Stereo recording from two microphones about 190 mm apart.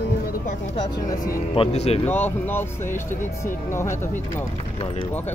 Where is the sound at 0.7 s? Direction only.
25° left (ahead or behind).